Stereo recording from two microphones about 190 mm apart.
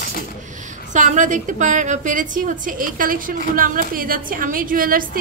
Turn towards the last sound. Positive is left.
turn(degrees=-50)  # may be behind; listen again after turning